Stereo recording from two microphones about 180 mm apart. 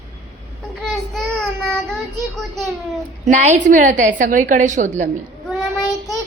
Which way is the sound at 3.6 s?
45° right (ahead or behind).